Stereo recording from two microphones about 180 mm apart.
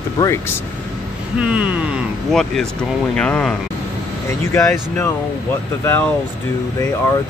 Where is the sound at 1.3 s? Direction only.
5° right (ahead or behind).